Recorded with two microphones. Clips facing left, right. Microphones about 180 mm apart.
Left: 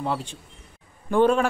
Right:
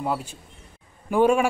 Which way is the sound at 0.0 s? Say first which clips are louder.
Right 1 dB; 5° right (ahead or behind).